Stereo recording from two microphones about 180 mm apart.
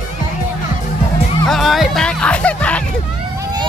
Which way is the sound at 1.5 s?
Centre (ahead or behind).